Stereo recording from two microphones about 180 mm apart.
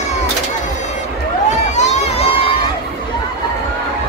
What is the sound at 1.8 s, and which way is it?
Music, 40° left (ahead or behind).